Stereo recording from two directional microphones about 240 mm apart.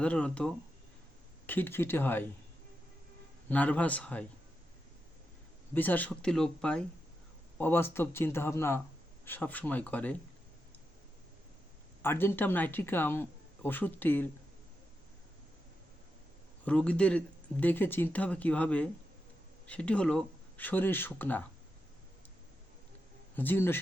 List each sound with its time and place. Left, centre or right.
0.0 s speech: centre
3.5 s speech: centre
5.7 s speech: centre
12.0 s speech: centre
16.6 s speech: centre
23.3 s speech: centre